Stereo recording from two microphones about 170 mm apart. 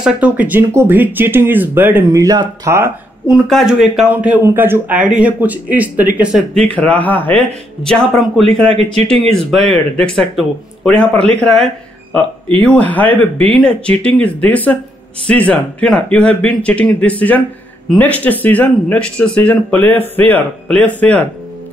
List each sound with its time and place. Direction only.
0.0 s a man's voice: 10° right (ahead or behind)
3.3 s a man's voice: centre (ahead or behind)
6.6 s speech: 5° left (ahead or behind)
12.6 s speech: 10° left (ahead or behind)